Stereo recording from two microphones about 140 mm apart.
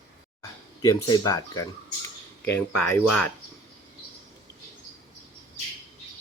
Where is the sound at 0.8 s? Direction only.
25° left (ahead or behind).